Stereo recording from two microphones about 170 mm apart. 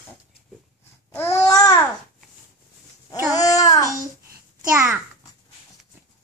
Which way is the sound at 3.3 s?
20° left (ahead or behind).